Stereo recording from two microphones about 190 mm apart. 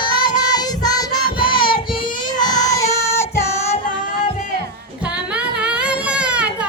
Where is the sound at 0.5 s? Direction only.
20° left (ahead or behind).